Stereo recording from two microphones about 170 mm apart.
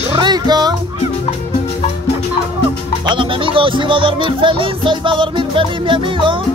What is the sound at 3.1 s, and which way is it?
Music, 30° right (ahead or behind).